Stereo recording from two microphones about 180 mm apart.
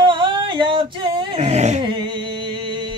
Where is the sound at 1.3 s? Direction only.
40° right (ahead or behind).